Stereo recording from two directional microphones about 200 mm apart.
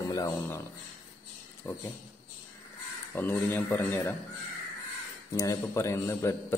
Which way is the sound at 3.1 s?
10° left (ahead or behind).